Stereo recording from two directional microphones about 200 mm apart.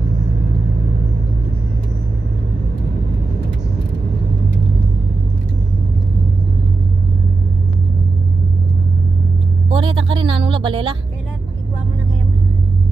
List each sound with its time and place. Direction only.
9.7 s music: 25° right (ahead or behind)